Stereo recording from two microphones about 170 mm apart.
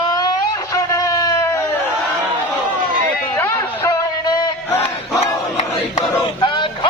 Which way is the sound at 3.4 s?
15° left (ahead or behind).